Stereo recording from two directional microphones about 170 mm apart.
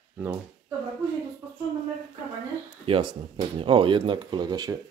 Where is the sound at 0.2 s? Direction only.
10° right (ahead or behind).